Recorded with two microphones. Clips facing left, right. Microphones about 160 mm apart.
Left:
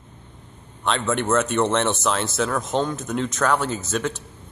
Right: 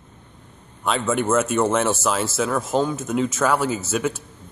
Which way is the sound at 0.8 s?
5° right (ahead or behind).